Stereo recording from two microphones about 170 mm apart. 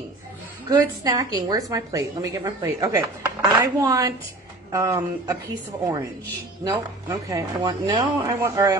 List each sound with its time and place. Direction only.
0.7 s a woman's voice: 25° right (ahead or behind)
6.6 s a woman's voice: 20° right (ahead or behind)